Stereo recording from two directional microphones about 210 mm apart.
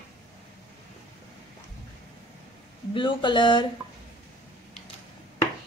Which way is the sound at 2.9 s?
25° left (ahead or behind).